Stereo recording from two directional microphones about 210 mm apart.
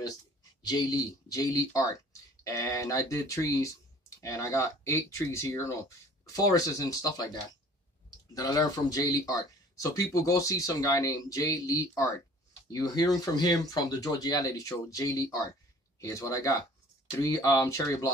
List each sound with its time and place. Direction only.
0.0 s speech: 20° left (ahead or behind)
8.4 s speech: 20° left (ahead or behind)